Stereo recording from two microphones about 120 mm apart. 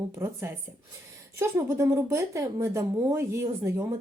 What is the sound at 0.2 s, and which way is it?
A woman's voice, 20° right (ahead or behind).